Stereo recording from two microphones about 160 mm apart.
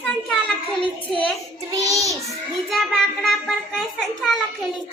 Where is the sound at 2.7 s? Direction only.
Centre (ahead or behind).